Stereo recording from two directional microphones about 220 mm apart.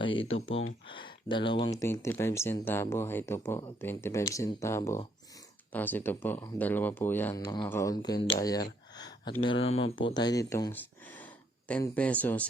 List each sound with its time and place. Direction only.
0.9 s speech: 20° left (ahead or behind)
7.4 s speech: 20° left (ahead or behind)